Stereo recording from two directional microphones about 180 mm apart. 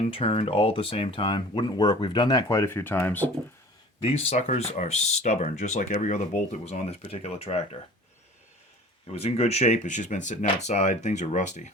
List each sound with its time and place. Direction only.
0.0 s speech: 35° left (ahead or behind); by 3.2 s 10° left (ahead or behind)
4.0 s speech: 35° left (ahead or behind)
9.1 s speech: 35° left (ahead or behind)